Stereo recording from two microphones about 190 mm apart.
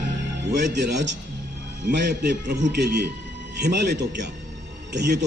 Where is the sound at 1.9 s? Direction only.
65° right (ahead or behind).